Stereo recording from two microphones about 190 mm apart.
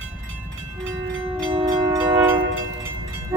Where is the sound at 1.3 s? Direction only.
25° right (ahead or behind).